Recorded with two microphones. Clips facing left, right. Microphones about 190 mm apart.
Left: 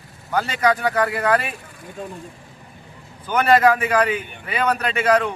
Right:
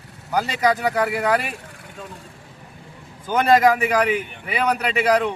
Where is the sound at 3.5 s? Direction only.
15° right (ahead or behind).